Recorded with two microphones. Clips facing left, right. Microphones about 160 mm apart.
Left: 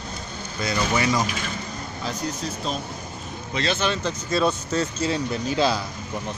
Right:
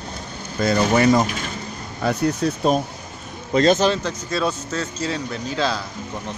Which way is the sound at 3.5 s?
45° right (ahead or behind).